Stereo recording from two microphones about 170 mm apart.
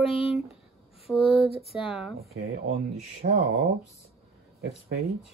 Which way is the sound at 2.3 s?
65° right (ahead or behind).